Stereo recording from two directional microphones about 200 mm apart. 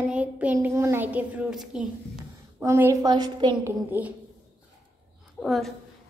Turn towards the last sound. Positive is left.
turn(degrees=0)  # may be behind; listen again after turning